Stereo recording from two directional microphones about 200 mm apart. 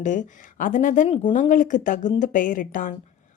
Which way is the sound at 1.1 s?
30° left (ahead or behind).